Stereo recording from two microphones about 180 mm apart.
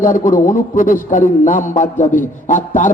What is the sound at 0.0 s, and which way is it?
A man's voice, 45° left (ahead or behind).